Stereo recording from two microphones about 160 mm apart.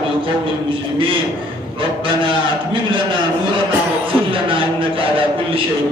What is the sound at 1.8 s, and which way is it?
A man's voice, 30° right (ahead or behind).